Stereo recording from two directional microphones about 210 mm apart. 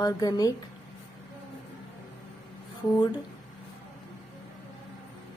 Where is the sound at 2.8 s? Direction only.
Centre (ahead or behind).